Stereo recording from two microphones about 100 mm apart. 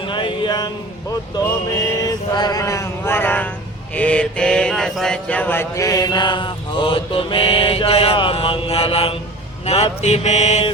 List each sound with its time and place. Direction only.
0.0 s a sound: 55° left (ahead or behind)
2.0 s music: 40° left (ahead or behind); by 3.5 s 20° left (ahead or behind)
3.9 s speech: 15° left (ahead or behind)
5.7 s mantra: 35° left (ahead or behind); by 9.1 s 70° left (ahead or behind)
9.6 s mantra: 90° left